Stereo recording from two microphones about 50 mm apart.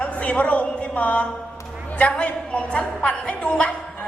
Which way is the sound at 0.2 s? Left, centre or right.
Left.